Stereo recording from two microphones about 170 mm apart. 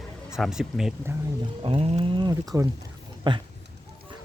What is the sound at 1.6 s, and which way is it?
Speech, 35° right (ahead or behind).